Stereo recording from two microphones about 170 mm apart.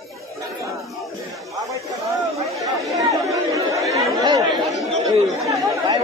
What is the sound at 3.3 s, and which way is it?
Chatter, 20° right (ahead or behind).